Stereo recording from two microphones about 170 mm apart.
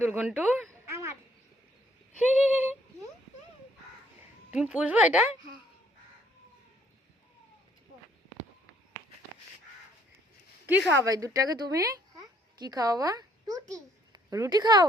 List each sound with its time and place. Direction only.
0.2 s a woman's voice: 10° right (ahead or behind)
0.7 s a sound: 15° right (ahead or behind)
2.2 s a woman's voice: 10° right (ahead or behind)
4.5 s a woman's voice: 5° right (ahead or behind)
10.7 s a woman's voice: 10° right (ahead or behind)
11.1 s a woman's voice: 20° right (ahead or behind)